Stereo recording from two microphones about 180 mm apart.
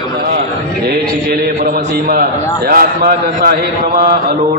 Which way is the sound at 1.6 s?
55° right (ahead or behind).